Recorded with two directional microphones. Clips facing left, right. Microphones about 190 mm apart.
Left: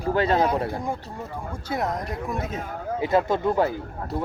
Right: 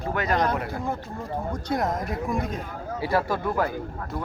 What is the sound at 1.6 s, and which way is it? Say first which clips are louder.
Speech: even; centre (ahead or behind).